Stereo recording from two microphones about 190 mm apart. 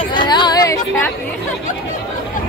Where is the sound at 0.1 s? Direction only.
25° left (ahead or behind).